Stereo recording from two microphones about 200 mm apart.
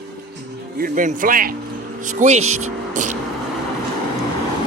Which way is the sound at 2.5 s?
90° right.